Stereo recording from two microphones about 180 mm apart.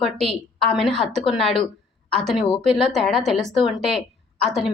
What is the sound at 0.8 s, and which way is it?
A woman's voice, centre (ahead or behind).